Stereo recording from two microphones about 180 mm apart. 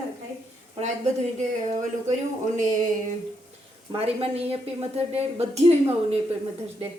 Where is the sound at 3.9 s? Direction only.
35° right (ahead or behind).